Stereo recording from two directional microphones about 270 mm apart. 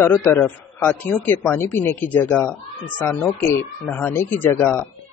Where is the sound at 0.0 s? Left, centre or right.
Centre.